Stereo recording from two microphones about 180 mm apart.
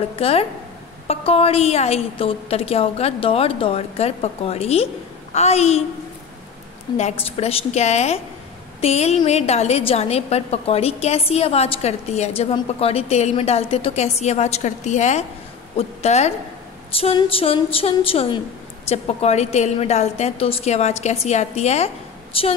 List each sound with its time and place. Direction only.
0.1 s a woman's voice: 35° left (ahead or behind)
7.0 s a woman's voice: 35° left (ahead or behind)